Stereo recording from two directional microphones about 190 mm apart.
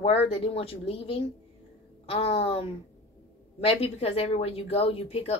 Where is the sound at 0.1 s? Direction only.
30° left (ahead or behind).